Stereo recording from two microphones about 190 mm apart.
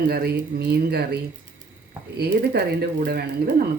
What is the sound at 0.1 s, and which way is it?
Speech, 55° right (ahead or behind).